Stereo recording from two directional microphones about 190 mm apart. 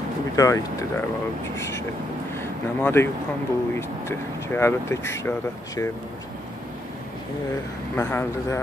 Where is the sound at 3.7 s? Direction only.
15° left (ahead or behind).